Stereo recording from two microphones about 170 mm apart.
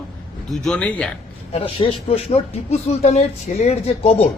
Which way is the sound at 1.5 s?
35° left (ahead or behind).